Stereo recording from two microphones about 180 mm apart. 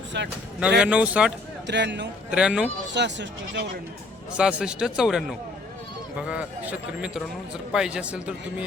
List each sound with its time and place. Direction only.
0.1 s speech: 75° right (ahead or behind)
0.8 s speech: 5° right (ahead or behind)
1.6 s speech: 75° right (ahead or behind)
2.3 s a man's voice: 5° right (ahead or behind)
2.9 s speech: 75° right (ahead or behind)
4.4 s a man's voice: 5° right (ahead or behind)